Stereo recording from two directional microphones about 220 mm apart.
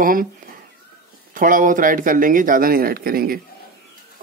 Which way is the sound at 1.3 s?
40° right (ahead or behind).